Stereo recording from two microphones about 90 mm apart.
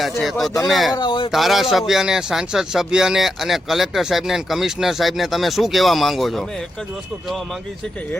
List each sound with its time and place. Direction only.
0.2 s speech: centre (ahead or behind)
0.9 s speech: 65° left (ahead or behind)
1.3 s speech: centre (ahead or behind)